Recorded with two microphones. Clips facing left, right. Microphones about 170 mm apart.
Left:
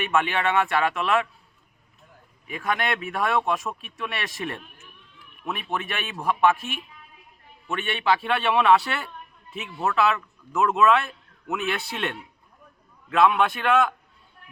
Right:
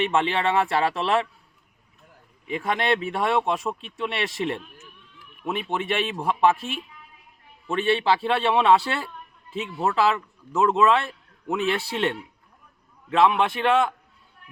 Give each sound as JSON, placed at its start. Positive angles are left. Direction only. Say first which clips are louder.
{"t": 0.0, "sound": "speech", "louder": "right 1 dB", "side_deg": -25}
{"t": 2.5, "sound": "speech", "louder": "right 3 dB", "side_deg": -25}